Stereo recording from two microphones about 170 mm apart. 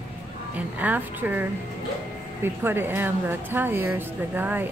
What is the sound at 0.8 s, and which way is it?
Speech, 10° right (ahead or behind).